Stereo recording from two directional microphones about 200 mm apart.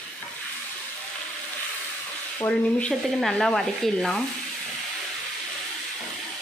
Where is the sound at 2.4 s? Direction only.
5° left (ahead or behind).